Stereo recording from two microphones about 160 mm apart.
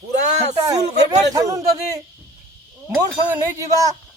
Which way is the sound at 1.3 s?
20° right (ahead or behind).